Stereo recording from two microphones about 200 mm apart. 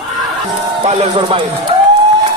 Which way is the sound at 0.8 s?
35° right (ahead or behind).